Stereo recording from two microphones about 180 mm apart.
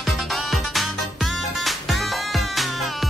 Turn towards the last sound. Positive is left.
turn(degrees=0)  # may be behind; listen again after turning